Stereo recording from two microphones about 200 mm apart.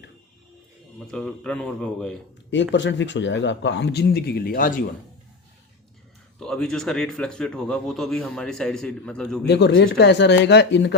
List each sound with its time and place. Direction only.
0.9 s a man's voice: 5° left (ahead or behind)
2.7 s speech: 65° left (ahead or behind); by 4.7 s 45° left (ahead or behind)
6.4 s a man's voice: 5° left (ahead or behind)
9.5 s speech: 60° left (ahead or behind)